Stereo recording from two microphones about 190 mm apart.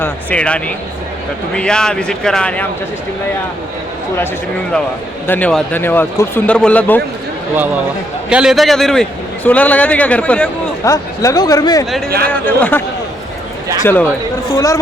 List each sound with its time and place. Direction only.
0.0 s speech: 5° left (ahead or behind)
5.2 s a man's voice: 10° left (ahead or behind)
8.3 s a man's voice: 5° right (ahead or behind)
10.8 s a man's voice: 15° left (ahead or behind)
12.0 s speech: 55° right (ahead or behind)
12.3 s a man's voice: 10° left (ahead or behind)
13.8 s a man's voice: 10° left (ahead or behind)